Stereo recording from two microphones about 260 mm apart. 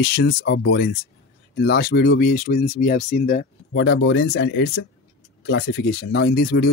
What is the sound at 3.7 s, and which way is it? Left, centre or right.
Speech, left.